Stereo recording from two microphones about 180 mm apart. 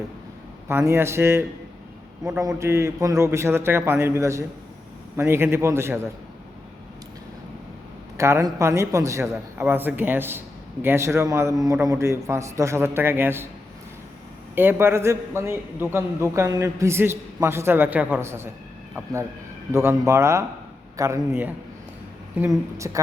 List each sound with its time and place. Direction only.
0.7 s a man's voice: 15° right (ahead or behind)
8.2 s a man's voice: 15° right (ahead or behind)
14.5 s a man's voice: 10° right (ahead or behind)
19.7 s a man's voice: 15° right (ahead or behind)